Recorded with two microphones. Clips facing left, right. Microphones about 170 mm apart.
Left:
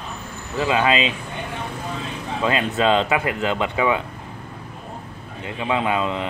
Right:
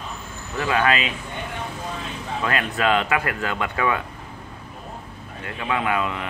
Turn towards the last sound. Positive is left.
turn(degrees=25)  # may be behind; listen again after turning